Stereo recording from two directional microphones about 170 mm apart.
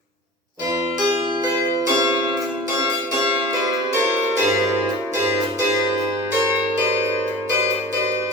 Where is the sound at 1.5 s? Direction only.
25° right (ahead or behind).